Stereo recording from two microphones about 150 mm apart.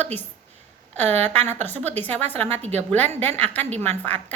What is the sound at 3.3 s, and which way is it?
Speech, 10° left (ahead or behind).